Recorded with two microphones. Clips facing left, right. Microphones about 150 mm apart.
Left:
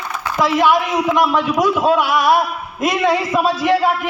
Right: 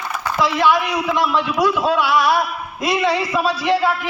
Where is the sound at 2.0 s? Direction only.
50° left (ahead or behind).